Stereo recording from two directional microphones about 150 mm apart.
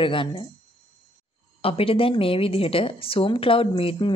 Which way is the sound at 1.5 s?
40° left (ahead or behind).